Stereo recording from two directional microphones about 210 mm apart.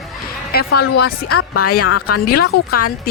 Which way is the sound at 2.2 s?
45° left (ahead or behind).